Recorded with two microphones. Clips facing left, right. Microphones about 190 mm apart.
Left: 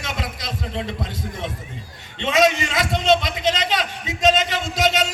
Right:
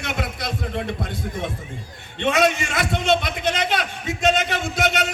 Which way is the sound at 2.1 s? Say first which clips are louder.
Left 1 dB; 55° right (ahead or behind).